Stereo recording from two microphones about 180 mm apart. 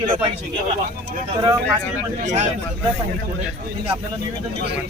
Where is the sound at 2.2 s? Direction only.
40° right (ahead or behind).